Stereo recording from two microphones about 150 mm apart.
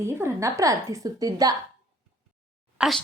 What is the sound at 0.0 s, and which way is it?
A woman's voice, 15° right (ahead or behind).